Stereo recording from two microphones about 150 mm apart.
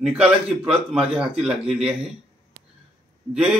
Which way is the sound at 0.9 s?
5° right (ahead or behind).